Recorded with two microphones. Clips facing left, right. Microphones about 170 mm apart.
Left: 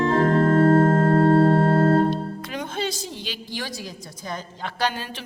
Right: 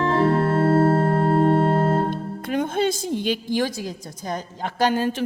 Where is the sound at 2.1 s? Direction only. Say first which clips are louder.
Right 1 dB; 50° right (ahead or behind).